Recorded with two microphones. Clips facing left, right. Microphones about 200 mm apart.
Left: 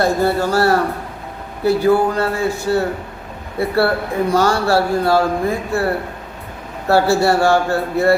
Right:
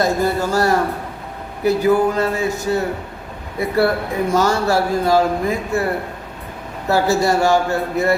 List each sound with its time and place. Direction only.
0.0 s a man's voice: 20° right (ahead or behind)